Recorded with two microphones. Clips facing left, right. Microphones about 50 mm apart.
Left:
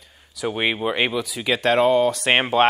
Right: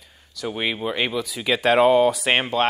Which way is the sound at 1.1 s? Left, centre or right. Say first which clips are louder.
Even; centre.